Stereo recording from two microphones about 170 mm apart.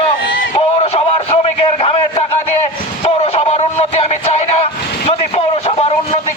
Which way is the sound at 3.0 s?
35° left (ahead or behind).